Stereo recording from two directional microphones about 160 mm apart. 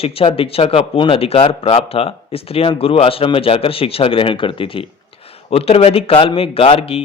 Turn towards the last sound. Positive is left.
turn(degrees=35)  # may be behind; listen again after turning